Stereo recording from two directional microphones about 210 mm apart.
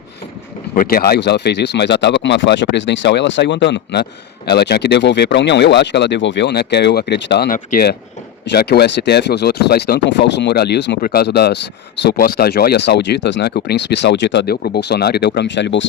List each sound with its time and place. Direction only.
0.7 s speech: 45° left (ahead or behind); by 15.9 s 60° left (ahead or behind)